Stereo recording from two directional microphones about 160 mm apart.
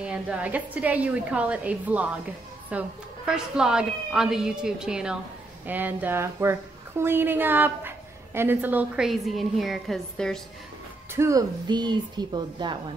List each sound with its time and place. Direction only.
0.0 s a woman's voice: 5° right (ahead or behind)
11.1 s speech: 20° right (ahead or behind)